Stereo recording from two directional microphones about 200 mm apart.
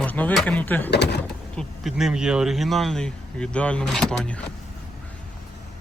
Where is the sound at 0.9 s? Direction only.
55° left (ahead or behind).